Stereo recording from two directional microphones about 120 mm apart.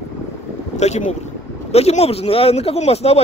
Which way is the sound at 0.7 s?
70° left (ahead or behind).